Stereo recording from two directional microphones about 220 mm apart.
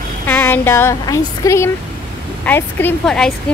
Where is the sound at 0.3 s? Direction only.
10° left (ahead or behind).